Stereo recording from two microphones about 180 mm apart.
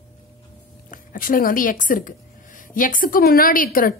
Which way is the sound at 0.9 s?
50° left (ahead or behind).